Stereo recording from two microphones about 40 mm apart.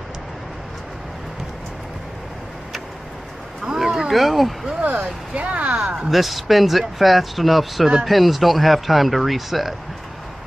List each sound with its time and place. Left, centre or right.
3.6 s a sound: centre
4.1 s speech: centre
5.3 s speech: right
6.0 s speech: centre